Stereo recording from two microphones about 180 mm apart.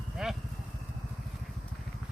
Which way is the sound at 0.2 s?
5° right (ahead or behind).